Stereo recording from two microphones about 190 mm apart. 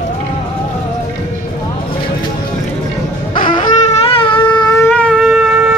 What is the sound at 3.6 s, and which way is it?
Shofar, 35° left (ahead or behind).